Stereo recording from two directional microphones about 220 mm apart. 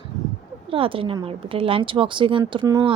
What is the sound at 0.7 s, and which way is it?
A woman's voice, 25° right (ahead or behind).